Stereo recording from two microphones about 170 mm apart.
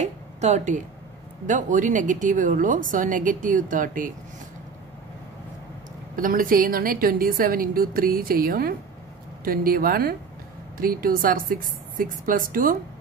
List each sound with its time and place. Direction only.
0.0 s a sound: 45° right (ahead or behind)
1.5 s speech: 50° right (ahead or behind)
6.1 s a woman's voice: 55° right (ahead or behind)